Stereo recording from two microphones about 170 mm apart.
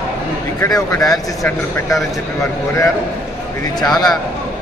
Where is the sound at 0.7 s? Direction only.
5° left (ahead or behind).